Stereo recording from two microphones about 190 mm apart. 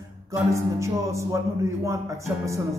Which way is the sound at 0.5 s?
15° right (ahead or behind).